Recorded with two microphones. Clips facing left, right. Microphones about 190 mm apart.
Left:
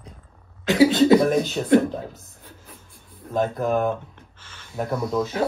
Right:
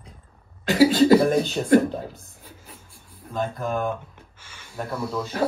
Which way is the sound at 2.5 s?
10° right (ahead or behind).